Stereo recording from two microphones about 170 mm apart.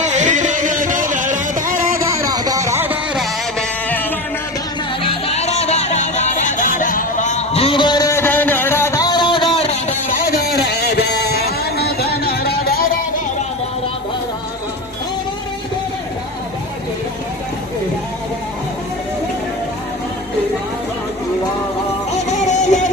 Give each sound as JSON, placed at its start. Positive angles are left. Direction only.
{"t": 0.0, "sound": "music", "side_deg": -45}
{"t": 2.0, "sound": "music", "side_deg": -20}
{"t": 3.6, "sound": "a sound", "side_deg": 10}
{"t": 5.0, "sound": "music", "side_deg": 35}
{"t": 10.2, "sound": "a sound", "side_deg": 60}
{"t": 22.4, "sound": "music", "side_deg": 45}